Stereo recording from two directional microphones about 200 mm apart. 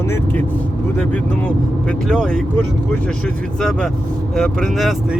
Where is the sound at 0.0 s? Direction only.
10° left (ahead or behind).